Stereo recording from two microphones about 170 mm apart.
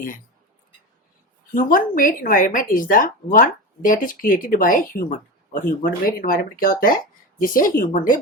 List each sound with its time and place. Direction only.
1.5 s speech: 55° left (ahead or behind)